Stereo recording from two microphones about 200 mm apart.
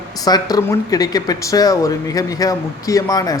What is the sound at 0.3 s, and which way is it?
A man's voice, 20° left (ahead or behind).